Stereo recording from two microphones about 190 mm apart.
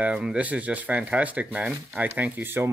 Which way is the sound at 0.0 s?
5° right (ahead or behind).